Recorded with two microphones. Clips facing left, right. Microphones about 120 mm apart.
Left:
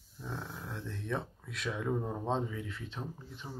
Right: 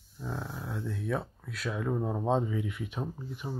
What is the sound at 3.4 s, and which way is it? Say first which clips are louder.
Speech: right 7 dB; 25° right (ahead or behind).